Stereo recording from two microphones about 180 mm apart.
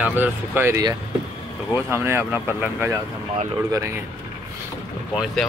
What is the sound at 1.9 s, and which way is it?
Speech, 10° right (ahead or behind).